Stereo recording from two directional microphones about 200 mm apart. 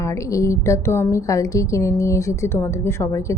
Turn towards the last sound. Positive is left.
turn(degrees=15)  # may be behind; listen again after turning